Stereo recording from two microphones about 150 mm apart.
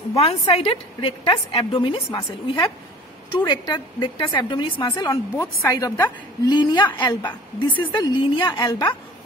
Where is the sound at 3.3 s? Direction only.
30° left (ahead or behind).